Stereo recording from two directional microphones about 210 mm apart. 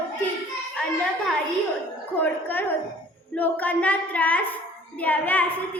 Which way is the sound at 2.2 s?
10° left (ahead or behind).